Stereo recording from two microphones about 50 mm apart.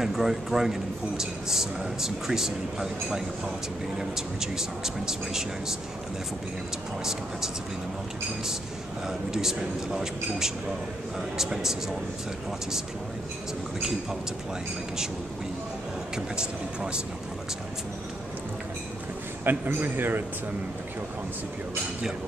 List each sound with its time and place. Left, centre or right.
0.0 s a man's voice: centre
9.3 s a man's voice: centre
16.3 s speech: centre
19.4 s a man's voice: right